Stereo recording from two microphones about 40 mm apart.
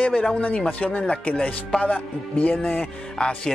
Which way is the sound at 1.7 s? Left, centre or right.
Left.